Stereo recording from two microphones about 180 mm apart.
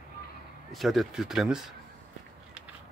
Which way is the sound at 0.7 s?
Centre (ahead or behind).